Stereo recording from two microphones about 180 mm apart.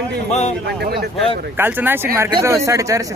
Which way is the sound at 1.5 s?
10° right (ahead or behind).